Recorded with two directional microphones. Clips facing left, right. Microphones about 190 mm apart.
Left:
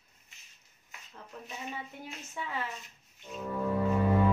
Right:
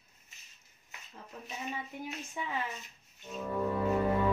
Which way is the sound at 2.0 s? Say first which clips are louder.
Right 2 dB; 15° right (ahead or behind).